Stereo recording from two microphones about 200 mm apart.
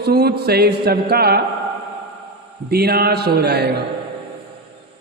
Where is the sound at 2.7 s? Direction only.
50° right (ahead or behind).